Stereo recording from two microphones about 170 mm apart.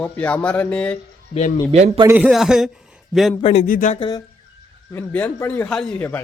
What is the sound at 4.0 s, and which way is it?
Speech, 25° left (ahead or behind).